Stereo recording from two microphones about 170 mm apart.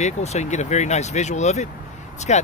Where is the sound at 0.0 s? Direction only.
40° left (ahead or behind).